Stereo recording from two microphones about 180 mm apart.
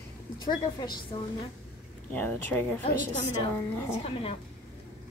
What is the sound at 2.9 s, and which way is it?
Speech, 45° left (ahead or behind).